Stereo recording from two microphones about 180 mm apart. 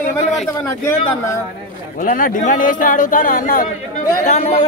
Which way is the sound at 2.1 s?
50° left (ahead or behind).